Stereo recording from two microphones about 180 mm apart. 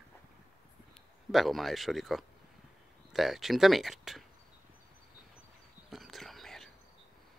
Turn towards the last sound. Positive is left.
turn(degrees=0)  # may be behind; listen again after turning